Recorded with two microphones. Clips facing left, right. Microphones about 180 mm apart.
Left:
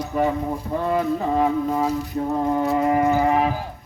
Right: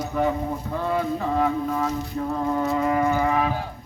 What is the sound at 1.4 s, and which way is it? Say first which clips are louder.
Music: left 3 dB; 35° left (ahead or behind).